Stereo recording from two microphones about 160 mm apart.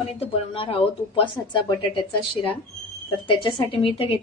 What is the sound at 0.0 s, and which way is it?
A woman's voice, 40° left (ahead or behind).